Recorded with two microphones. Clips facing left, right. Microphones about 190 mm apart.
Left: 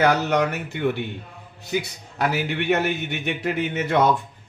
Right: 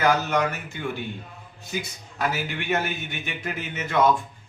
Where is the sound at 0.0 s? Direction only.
65° left (ahead or behind).